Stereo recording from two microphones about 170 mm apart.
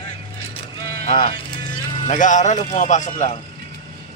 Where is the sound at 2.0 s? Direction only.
45° left (ahead or behind).